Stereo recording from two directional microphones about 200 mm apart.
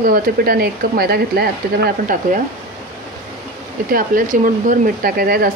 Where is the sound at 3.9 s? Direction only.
45° right (ahead or behind).